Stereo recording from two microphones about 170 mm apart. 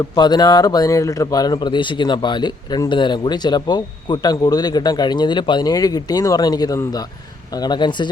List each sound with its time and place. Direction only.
0.2 s speech: 25° left (ahead or behind)